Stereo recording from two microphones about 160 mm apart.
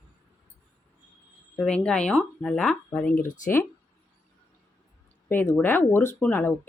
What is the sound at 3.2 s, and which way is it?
Speech, 55° left (ahead or behind).